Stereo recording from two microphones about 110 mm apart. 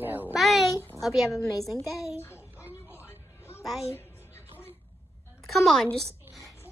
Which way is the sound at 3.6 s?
Centre (ahead or behind).